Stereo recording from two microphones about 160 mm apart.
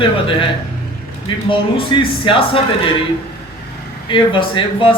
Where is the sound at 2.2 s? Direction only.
35° left (ahead or behind).